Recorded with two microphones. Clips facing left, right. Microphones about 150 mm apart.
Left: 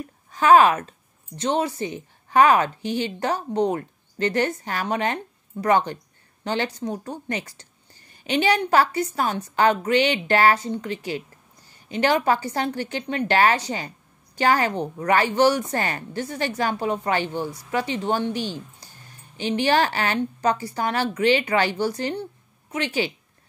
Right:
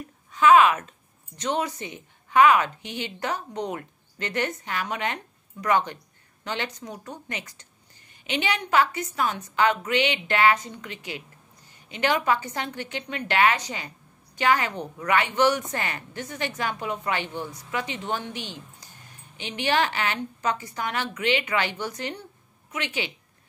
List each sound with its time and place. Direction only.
0.3 s a woman's voice: 35° left (ahead or behind)